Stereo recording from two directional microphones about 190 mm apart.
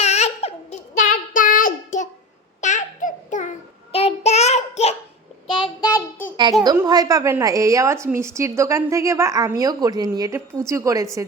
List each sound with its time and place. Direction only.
0.0 s child singing: 35° left (ahead or behind)
5.5 s child singing: 25° left (ahead or behind)
6.3 s a woman's voice: 20° right (ahead or behind)